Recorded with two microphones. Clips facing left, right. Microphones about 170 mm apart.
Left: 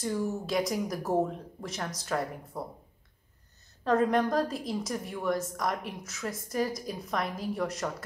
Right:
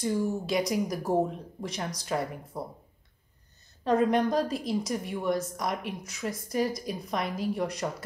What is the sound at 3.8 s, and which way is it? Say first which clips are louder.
Speech: right 1 dB; 20° right (ahead or behind).